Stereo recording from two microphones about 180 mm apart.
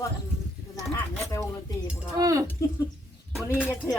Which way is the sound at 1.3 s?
15° left (ahead or behind).